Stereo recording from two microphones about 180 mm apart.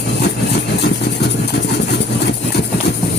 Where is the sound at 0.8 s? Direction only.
65° left (ahead or behind).